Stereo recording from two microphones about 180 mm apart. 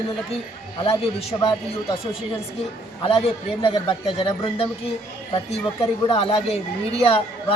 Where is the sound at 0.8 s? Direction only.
30° left (ahead or behind).